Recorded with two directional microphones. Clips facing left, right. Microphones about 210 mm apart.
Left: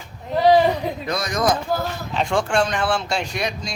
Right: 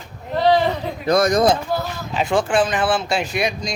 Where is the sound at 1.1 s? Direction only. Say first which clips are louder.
Right 14 dB; 50° right (ahead or behind).